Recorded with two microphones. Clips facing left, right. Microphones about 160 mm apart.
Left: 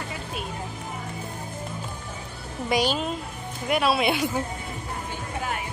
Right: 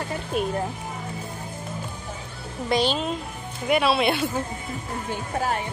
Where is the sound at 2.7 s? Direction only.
10° left (ahead or behind).